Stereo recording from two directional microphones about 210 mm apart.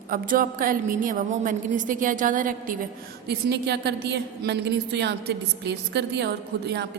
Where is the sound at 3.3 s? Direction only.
50° right (ahead or behind).